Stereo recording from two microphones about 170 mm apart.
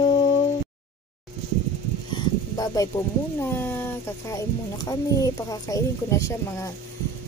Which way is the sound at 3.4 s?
15° left (ahead or behind).